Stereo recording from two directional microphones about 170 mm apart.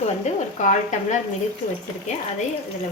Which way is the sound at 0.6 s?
45° left (ahead or behind).